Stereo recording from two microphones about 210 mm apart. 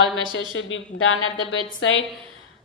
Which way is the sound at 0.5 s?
70° left (ahead or behind).